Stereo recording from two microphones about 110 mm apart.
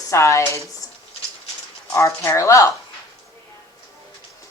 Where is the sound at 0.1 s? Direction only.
25° left (ahead or behind).